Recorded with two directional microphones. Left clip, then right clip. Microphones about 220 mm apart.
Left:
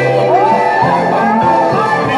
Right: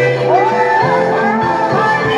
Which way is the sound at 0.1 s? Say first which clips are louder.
Left 2 dB; 35° left (ahead or behind).